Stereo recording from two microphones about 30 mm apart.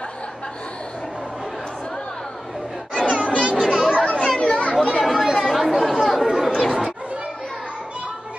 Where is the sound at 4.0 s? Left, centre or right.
Left.